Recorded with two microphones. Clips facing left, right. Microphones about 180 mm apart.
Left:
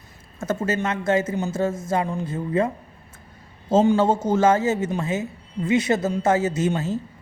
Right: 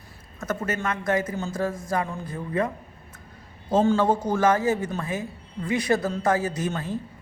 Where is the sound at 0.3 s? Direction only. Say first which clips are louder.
Left 4 dB; 25° left (ahead or behind).